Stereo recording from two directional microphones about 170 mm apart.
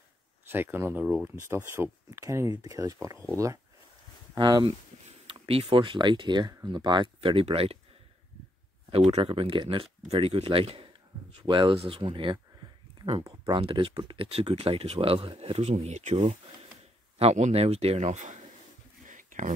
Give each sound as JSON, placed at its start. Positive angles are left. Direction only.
{"t": 0.5, "sound": "speech", "side_deg": -10}
{"t": 4.4, "sound": "speech", "side_deg": -25}
{"t": 8.9, "sound": "speech", "side_deg": -35}
{"t": 13.6, "sound": "speech", "side_deg": -35}
{"t": 19.0, "sound": "a sound", "side_deg": -50}